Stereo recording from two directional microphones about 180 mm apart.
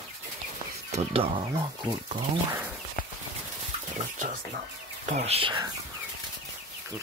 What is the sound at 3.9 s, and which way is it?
Speech, 45° right (ahead or behind).